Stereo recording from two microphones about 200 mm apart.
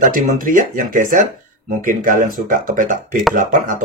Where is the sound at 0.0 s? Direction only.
40° right (ahead or behind).